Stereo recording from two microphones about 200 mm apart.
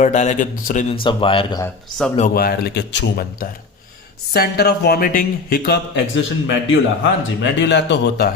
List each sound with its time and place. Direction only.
0.0 s a man's voice: 35° left (ahead or behind)
1.0 s a man's voice: 25° left (ahead or behind)
1.6 s a man's voice: 5° left (ahead or behind)
2.3 s speech: 50° left (ahead or behind)
6.5 s speech: 70° left (ahead or behind)